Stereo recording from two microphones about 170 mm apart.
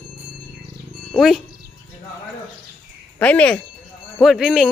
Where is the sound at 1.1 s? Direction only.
Centre (ahead or behind).